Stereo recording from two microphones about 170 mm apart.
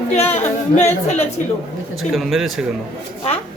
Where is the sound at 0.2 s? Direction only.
40° left (ahead or behind).